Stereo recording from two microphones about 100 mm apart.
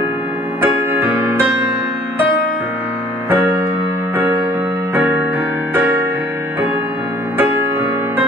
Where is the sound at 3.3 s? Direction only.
20° right (ahead or behind).